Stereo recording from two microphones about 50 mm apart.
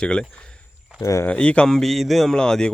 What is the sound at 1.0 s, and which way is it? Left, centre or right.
Speech, left.